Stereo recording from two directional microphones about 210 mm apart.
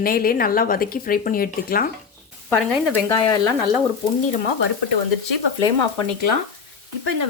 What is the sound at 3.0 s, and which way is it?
Speech, 15° left (ahead or behind).